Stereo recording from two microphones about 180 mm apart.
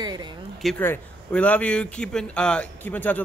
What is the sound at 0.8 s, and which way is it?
Speech, 10° left (ahead or behind).